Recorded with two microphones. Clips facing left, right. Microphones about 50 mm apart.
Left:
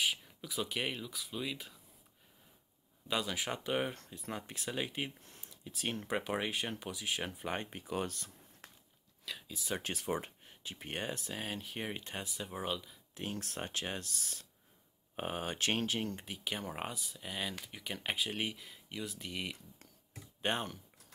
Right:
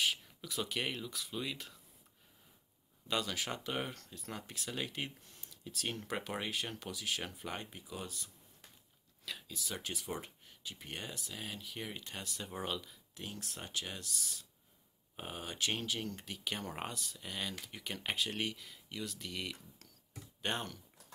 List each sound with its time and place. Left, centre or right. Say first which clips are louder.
0.0 s speech: even; centre
3.1 s speech: left 1 dB; centre
3.9 s speech: left 3 dB; left
9.5 s speech: left 5 dB; left
12.3 s speech: left 1 dB; centre
13.1 s speech: left 5 dB; left
16.2 s speech: left 1 dB; centre
16.5 s speech: left 2 dB; centre; by 20.8 s left